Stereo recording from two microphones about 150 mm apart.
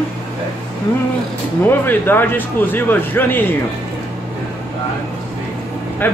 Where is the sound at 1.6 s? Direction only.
15° left (ahead or behind).